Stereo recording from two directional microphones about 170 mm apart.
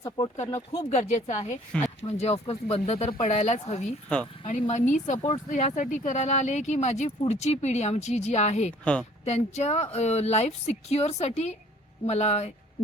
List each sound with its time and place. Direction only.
0.5 s speech: 20° left (ahead or behind)
0.9 s speech: 45° left (ahead or behind)
1.7 s speech: 5° left (ahead or behind)
2.0 s speech: 40° left (ahead or behind)
8.8 s speech: 5° left (ahead or behind)
9.2 s speech: 40° left (ahead or behind)